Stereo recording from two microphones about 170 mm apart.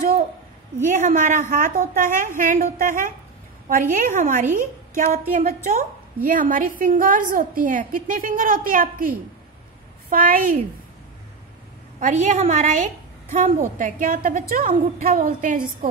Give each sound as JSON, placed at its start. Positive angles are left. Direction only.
{"t": 0.8, "sound": "a woman's voice", "side_deg": -45}
{"t": 12.0, "sound": "a woman's voice", "side_deg": -45}